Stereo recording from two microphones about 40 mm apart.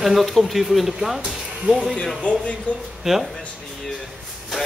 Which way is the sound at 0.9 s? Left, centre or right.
Centre.